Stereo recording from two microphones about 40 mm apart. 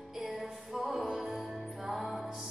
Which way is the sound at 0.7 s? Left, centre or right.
Centre.